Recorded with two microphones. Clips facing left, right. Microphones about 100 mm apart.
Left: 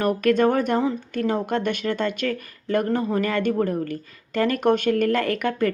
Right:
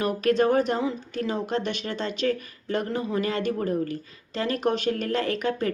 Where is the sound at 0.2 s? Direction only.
50° left (ahead or behind).